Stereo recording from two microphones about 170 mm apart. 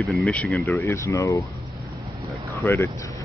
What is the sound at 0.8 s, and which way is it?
Speech, 15° left (ahead or behind).